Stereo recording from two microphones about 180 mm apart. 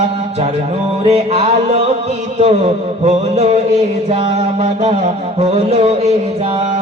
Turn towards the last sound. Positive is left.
turn(degrees=-35)  # may be behind; listen again after turning